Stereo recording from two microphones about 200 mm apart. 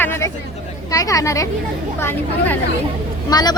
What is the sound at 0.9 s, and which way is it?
Speech, 15° left (ahead or behind).